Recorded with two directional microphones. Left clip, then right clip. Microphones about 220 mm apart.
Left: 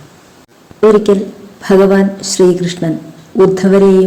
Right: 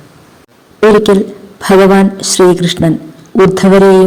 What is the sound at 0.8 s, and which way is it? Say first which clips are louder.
Speech: right 2 dB; 40° right (ahead or behind).